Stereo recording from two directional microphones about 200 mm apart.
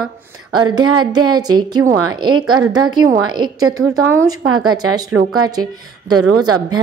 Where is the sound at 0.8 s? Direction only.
90° right.